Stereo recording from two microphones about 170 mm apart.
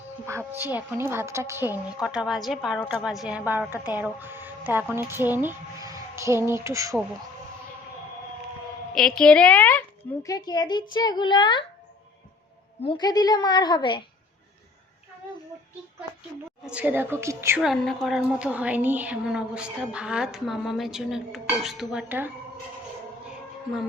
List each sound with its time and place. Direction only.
0.3 s a woman's voice: 15° right (ahead or behind)
9.0 s a woman's voice: 5° left (ahead or behind)
10.2 s a woman's voice: 20° left (ahead or behind)
12.8 s a woman's voice: 30° left (ahead or behind)
16.6 s a woman's voice: 10° right (ahead or behind)
17.6 s a woman's voice: centre (ahead or behind)